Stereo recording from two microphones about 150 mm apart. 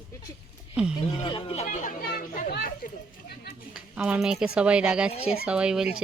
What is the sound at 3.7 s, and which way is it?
Speech, 5° right (ahead or behind).